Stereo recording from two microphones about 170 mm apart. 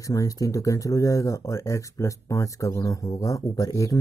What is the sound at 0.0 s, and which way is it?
Speech, 20° left (ahead or behind).